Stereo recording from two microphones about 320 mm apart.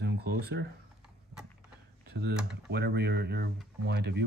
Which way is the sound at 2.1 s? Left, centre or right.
Right.